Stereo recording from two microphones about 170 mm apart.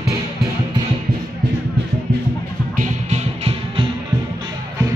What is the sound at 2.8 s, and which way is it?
Music, 40° right (ahead or behind).